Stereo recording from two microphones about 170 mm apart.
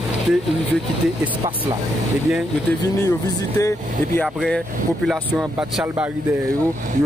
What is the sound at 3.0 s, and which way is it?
Speech, 20° left (ahead or behind).